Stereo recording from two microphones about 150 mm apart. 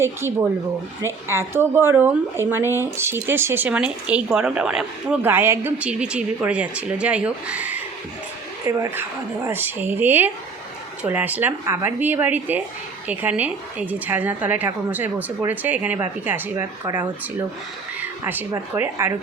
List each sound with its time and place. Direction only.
0.0 s speech: 15° right (ahead or behind)
8.6 s speech: 20° right (ahead or behind)
18.3 s speech: 15° right (ahead or behind)